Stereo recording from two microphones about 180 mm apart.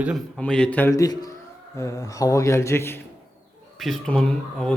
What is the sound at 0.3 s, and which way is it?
A man's voice, 5° left (ahead or behind).